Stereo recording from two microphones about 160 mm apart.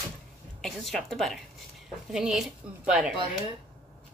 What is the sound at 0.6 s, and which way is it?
Speech, centre (ahead or behind).